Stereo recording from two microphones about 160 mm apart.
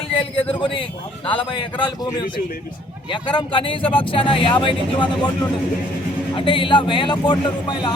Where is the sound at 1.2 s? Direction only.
30° left (ahead or behind).